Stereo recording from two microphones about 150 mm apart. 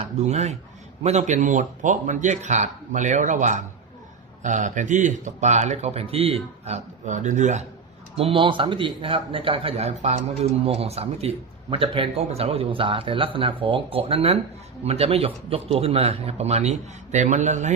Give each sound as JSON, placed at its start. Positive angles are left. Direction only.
{"t": 0.0, "sound": "speech", "side_deg": -50}
{"t": 8.1, "sound": "a man's voice", "side_deg": -40}